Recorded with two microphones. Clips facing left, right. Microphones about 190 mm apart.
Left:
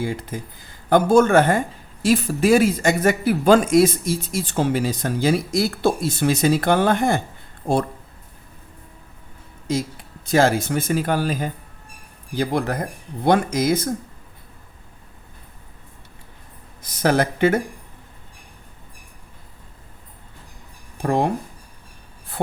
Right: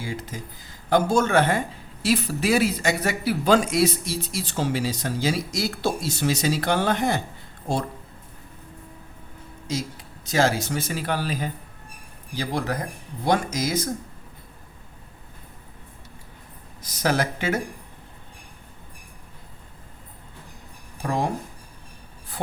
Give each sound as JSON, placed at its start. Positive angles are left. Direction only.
{"t": 0.0, "sound": "speech", "side_deg": 55}
{"t": 9.6, "sound": "speech", "side_deg": 55}
{"t": 16.8, "sound": "speech", "side_deg": 55}
{"t": 21.0, "sound": "speech", "side_deg": 60}